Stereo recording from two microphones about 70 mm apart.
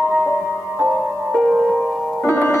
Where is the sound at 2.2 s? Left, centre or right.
Left.